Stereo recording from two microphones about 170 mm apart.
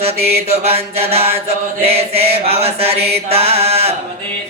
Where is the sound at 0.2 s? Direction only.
70° right (ahead or behind).